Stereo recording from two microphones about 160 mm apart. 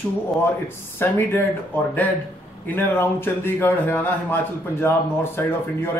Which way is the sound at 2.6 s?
10° left (ahead or behind).